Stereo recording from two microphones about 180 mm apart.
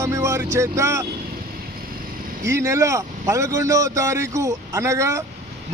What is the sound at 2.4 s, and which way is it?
Speech, 15° right (ahead or behind).